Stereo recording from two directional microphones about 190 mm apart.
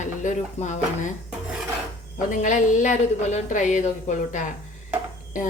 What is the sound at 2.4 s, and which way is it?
Speech, 40° left (ahead or behind).